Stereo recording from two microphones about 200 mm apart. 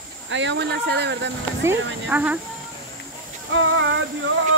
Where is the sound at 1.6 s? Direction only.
10° right (ahead or behind).